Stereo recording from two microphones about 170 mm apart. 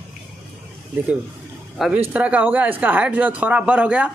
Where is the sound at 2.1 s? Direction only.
10° right (ahead or behind).